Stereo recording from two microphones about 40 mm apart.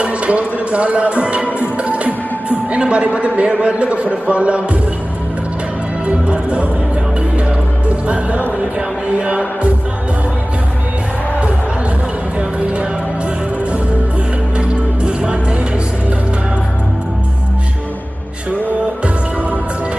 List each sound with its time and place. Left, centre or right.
0.0 s music: right
2.7 s a man's voice: right
6.0 s speech: right
8.1 s a man's voice: right
12.4 s music: right
14.6 s music: right